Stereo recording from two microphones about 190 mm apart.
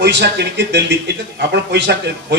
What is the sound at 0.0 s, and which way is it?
Speech, 60° right (ahead or behind).